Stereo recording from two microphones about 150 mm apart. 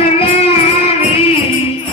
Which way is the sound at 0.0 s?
40° left (ahead or behind).